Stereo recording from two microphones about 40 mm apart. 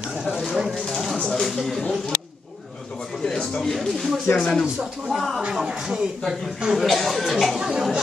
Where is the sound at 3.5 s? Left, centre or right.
Centre.